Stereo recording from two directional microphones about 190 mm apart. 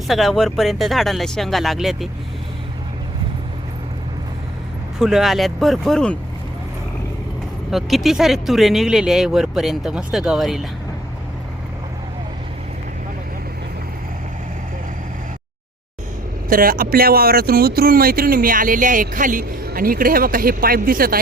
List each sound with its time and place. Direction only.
0.1 s speech: centre (ahead or behind)
4.9 s speech: centre (ahead or behind)
7.7 s speech: centre (ahead or behind)
16.5 s speech: 50° right (ahead or behind)